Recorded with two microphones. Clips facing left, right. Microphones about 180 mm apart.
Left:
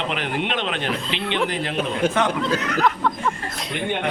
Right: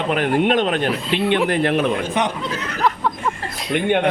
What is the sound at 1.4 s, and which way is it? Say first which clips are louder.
Speech: right 6 dB; 55° right (ahead or behind).